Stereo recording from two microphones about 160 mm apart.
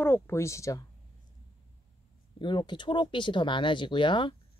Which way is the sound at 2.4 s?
30° left (ahead or behind).